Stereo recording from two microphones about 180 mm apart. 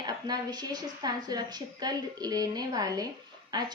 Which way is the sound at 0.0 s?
20° right (ahead or behind).